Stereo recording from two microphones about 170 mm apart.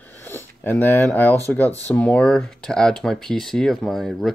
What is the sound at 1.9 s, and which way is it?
Speech, 10° left (ahead or behind).